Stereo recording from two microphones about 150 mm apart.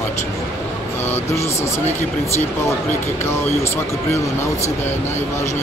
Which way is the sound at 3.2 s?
15° left (ahead or behind).